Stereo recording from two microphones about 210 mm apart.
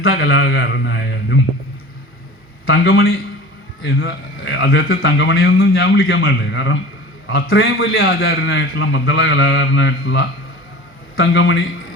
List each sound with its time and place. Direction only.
0.0 s a man's voice: 75° left (ahead or behind)
0.5 s a man's voice: 55° left (ahead or behind)
3.8 s a man's voice: 65° left (ahead or behind)